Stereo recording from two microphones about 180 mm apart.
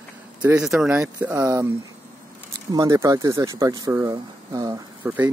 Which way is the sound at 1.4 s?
20° right (ahead or behind).